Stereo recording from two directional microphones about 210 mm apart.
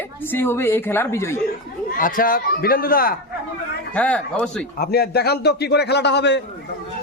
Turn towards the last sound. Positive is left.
turn(degrees=55)  # may be behind; listen again after turning